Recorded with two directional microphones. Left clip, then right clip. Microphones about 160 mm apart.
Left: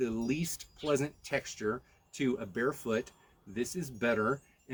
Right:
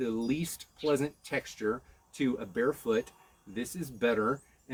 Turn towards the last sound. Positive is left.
turn(degrees=15)  # may be behind; listen again after turning